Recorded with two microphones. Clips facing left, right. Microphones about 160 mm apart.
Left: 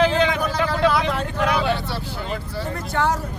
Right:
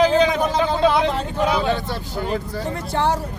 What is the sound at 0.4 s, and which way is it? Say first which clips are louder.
Vehicle: right 2 dB; 25° right (ahead or behind).